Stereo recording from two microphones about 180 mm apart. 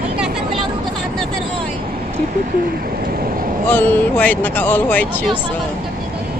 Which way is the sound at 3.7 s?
10° left (ahead or behind).